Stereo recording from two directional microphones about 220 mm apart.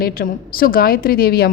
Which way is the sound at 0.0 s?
40° left (ahead or behind).